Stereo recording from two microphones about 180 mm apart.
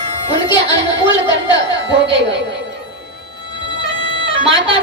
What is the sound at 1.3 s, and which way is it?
Speech, 90° right.